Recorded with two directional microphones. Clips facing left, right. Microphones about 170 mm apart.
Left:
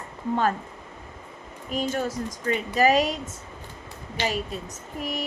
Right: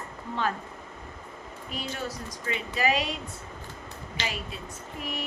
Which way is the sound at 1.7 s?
45° left (ahead or behind).